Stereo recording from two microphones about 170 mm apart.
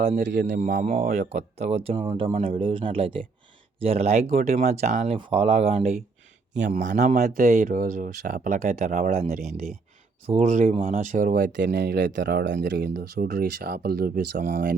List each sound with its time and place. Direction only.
0.0 s speech: 40° right (ahead or behind)
0.4 s speech: 50° right (ahead or behind)
6.7 s speech: 50° right (ahead or behind)